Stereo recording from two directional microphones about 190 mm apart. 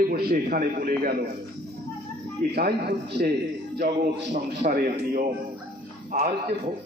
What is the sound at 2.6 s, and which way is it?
Speech, 60° right (ahead or behind).